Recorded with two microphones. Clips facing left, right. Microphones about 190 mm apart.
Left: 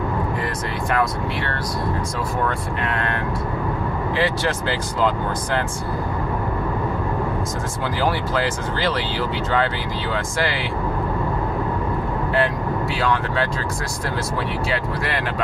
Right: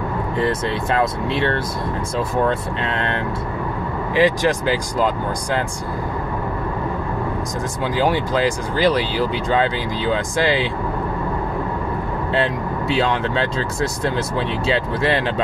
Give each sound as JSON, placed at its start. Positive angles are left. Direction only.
{"t": 0.9, "sound": "speech", "side_deg": -25}
{"t": 4.1, "sound": "speech", "side_deg": -15}
{"t": 8.0, "sound": "speech", "side_deg": -15}
{"t": 12.4, "sound": "speech", "side_deg": -20}
{"t": 14.7, "sound": "speech", "side_deg": -25}